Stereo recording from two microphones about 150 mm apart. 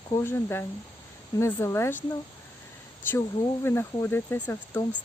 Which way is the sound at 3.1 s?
15° left (ahead or behind).